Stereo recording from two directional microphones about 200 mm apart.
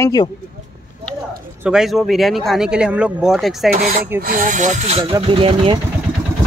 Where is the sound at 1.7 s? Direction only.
Centre (ahead or behind).